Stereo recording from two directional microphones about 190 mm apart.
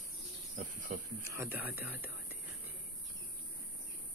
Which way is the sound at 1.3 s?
10° right (ahead or behind).